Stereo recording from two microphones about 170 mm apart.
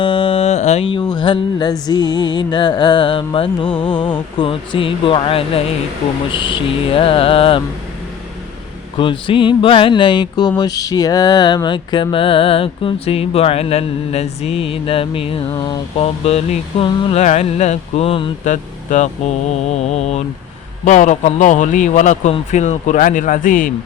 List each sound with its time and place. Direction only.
0.0 s music: 30° left (ahead or behind)
6.3 s mantra: 30° left (ahead or behind)
9.0 s music: 30° left (ahead or behind)
10.6 s mantra: 20° left (ahead or behind)
15.5 s music: 25° left (ahead or behind)
16.0 s mantra: 35° left (ahead or behind)
18.4 s speech: 45° left (ahead or behind)
19.7 s mantra: 40° left (ahead or behind)
20.8 s a man's voice: 45° left (ahead or behind)